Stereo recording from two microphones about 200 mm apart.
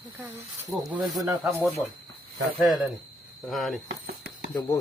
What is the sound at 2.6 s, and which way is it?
Speech, 10° right (ahead or behind).